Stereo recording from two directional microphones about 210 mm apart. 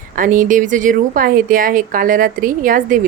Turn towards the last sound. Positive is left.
turn(degrees=-40)  # may be behind; listen again after turning